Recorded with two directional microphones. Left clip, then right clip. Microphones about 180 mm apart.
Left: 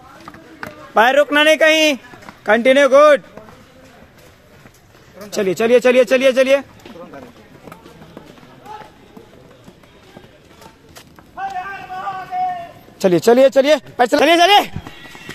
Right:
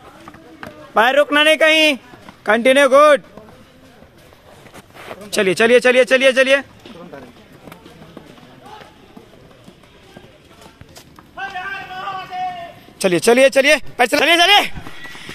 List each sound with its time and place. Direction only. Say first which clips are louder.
0.6 s speech: left 1 dB; centre (ahead or behind)
5.3 s speech: right 1 dB; 10° right (ahead or behind)
13.0 s speech: left 1 dB; 20° left (ahead or behind)